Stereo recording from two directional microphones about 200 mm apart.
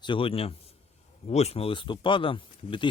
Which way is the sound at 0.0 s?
25° left (ahead or behind).